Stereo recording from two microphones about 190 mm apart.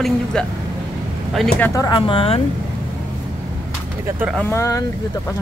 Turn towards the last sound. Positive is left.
turn(degrees=15)  # may be behind; listen again after turning